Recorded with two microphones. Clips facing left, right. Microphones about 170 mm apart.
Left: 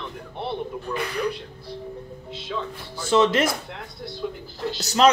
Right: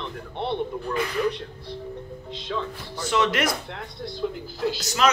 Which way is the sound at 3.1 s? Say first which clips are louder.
Left 4 dB; 30° left (ahead or behind).